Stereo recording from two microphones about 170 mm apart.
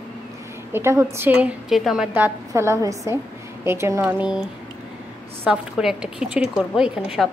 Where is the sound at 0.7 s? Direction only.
15° right (ahead or behind).